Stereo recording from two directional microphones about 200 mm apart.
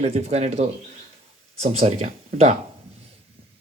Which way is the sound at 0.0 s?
30° right (ahead or behind).